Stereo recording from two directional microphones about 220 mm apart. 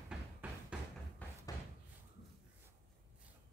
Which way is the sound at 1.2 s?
5° left (ahead or behind).